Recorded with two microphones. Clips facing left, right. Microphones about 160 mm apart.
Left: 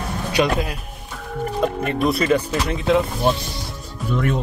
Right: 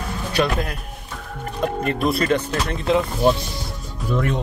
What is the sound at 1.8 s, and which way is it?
Speech, centre (ahead or behind).